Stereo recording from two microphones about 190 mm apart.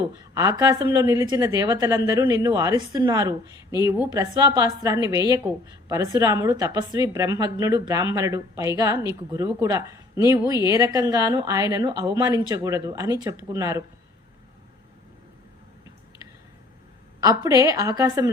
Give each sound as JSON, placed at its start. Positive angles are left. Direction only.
{"t": 0.3, "sound": "a woman's voice", "side_deg": -15}
{"t": 17.2, "sound": "a woman's voice", "side_deg": -20}